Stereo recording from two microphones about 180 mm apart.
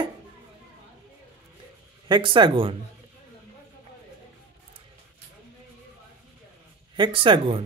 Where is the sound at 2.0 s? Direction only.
25° right (ahead or behind).